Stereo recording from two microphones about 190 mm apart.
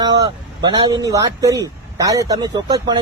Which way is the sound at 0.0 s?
20° right (ahead or behind).